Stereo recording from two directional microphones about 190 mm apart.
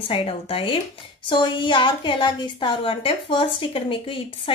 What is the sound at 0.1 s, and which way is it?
A woman's voice, 30° left (ahead or behind).